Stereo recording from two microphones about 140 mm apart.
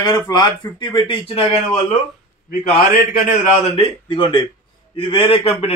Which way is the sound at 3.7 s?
35° left (ahead or behind).